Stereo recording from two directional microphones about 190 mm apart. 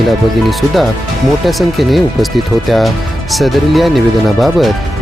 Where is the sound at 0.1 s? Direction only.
Centre (ahead or behind).